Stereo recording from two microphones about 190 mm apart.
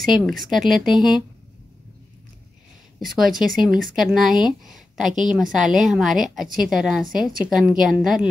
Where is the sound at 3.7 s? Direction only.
45° right (ahead or behind).